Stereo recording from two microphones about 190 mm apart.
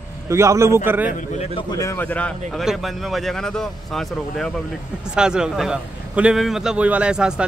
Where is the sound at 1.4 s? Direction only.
25° left (ahead or behind).